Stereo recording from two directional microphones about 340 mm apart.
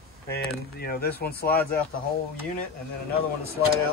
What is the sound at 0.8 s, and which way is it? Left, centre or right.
Speech, left.